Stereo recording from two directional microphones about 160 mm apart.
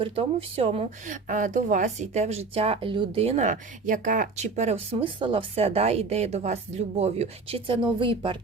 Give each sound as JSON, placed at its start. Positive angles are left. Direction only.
{"t": 0.0, "sound": "speech", "side_deg": -35}